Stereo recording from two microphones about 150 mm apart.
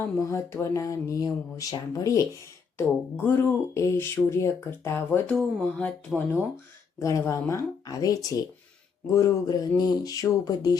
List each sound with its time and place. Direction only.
0.2 s speech: 20° left (ahead or behind)
7.0 s speech: 20° left (ahead or behind)